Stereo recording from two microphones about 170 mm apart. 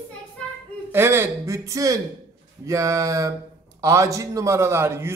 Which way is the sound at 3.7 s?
20° right (ahead or behind).